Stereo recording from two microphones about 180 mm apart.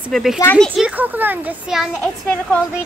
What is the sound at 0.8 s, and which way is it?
Speech, 10° right (ahead or behind).